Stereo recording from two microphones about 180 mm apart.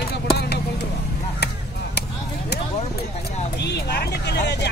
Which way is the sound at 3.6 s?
65° left (ahead or behind).